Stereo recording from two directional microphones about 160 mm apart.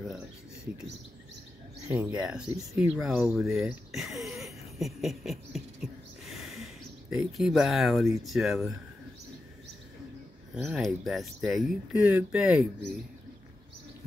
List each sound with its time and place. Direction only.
1.9 s speech: 20° right (ahead or behind)
2.1 s speech: 5° right (ahead or behind)
2.5 s speech: 20° right (ahead or behind)
3.0 s speech: 5° right (ahead or behind)
10.5 s speech: 5° right (ahead or behind)